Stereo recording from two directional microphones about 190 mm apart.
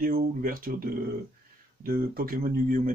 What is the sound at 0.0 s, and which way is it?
Speech, 50° right (ahead or behind).